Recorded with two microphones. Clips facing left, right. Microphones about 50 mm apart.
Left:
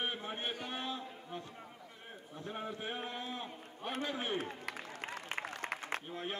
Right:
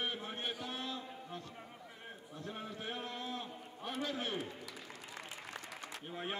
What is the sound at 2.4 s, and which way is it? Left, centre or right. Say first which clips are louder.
A man's voice: left 3 dB; left.